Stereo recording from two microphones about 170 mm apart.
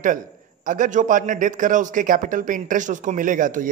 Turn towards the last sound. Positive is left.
turn(degrees=-50)  # may be behind; listen again after turning